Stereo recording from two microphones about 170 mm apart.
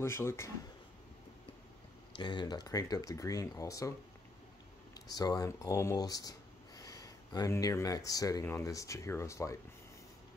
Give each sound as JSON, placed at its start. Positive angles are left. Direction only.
{"t": 0.0, "sound": "speech", "side_deg": 15}
{"t": 2.1, "sound": "speech", "side_deg": 25}
{"t": 4.9, "sound": "speech", "side_deg": 20}